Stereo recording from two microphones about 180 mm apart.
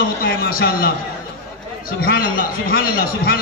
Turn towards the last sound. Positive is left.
turn(degrees=55)  # may be behind; listen again after turning